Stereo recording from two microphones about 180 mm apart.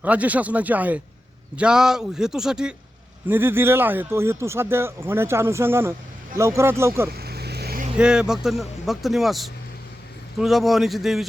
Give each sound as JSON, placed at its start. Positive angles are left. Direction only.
{"t": 0.0, "sound": "a man's voice", "side_deg": -10}
{"t": 7.2, "sound": "vehicle", "side_deg": -60}
{"t": 7.9, "sound": "a man's voice", "side_deg": -5}